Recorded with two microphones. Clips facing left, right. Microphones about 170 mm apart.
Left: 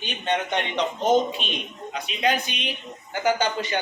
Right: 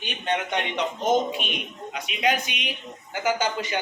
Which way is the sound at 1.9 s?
10° right (ahead or behind).